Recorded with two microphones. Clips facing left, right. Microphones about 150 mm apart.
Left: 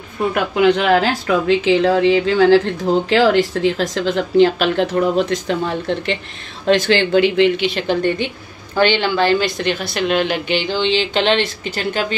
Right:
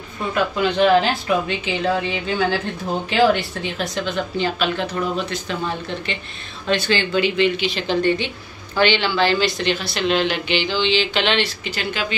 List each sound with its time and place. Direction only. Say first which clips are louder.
0.3 s speech: left 5 dB; 80° left
6.7 s a woman's voice: left 6 dB; 85° left; by 11.0 s 50° left (ahead or behind)
11.0 s speech: left 4 dB; 35° left (ahead or behind)